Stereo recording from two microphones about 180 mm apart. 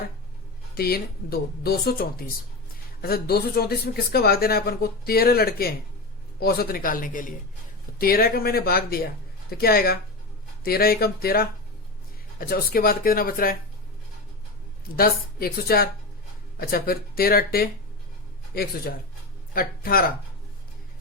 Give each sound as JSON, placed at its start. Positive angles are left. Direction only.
{"t": 0.8, "sound": "speech", "side_deg": 60}
{"t": 14.9, "sound": "speech", "side_deg": 55}